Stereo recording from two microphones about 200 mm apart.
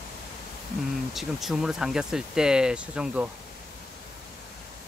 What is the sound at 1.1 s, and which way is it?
Speech, centre (ahead or behind).